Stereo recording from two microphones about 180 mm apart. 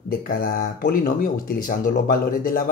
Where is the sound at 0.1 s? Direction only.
55° left (ahead or behind).